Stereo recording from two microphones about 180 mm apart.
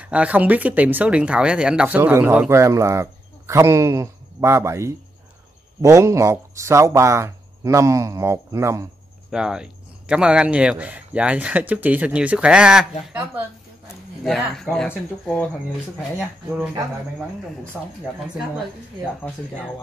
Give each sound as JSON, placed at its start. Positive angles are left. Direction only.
{"t": 0.0, "sound": "speech", "side_deg": -5}
{"t": 9.3, "sound": "speech", "side_deg": -5}
{"t": 13.8, "sound": "speech", "side_deg": 0}
{"t": 16.2, "sound": "speech", "side_deg": -5}
{"t": 17.8, "sound": "speech", "side_deg": -5}